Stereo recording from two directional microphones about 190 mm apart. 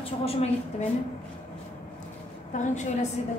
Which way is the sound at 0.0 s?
30° left (ahead or behind).